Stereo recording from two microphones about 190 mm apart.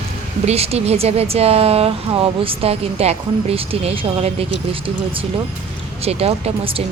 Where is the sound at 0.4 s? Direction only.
30° right (ahead or behind).